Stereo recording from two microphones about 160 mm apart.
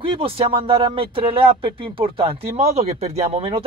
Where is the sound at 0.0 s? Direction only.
35° right (ahead or behind).